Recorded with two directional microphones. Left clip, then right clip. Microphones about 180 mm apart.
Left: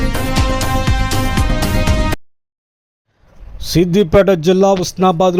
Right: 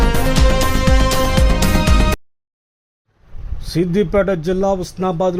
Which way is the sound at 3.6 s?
25° left (ahead or behind).